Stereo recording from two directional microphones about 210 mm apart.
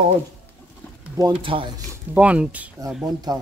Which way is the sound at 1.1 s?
20° right (ahead or behind).